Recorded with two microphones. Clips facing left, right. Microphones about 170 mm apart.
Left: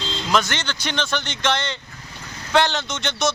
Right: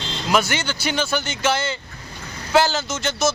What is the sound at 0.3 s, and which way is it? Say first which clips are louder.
Speech: right 2 dB; 10° right (ahead or behind).